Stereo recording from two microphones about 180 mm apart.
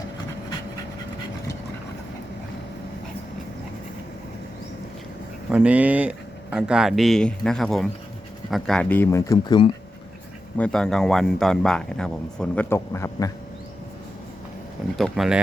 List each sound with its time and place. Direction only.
5.5 s speech: 5° right (ahead or behind); by 9.7 s 25° left (ahead or behind)
10.6 s speech: 5° left (ahead or behind)
14.9 s speech: centre (ahead or behind)